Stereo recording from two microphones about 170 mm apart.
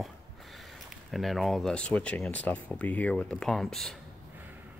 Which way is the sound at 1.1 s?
Centre (ahead or behind).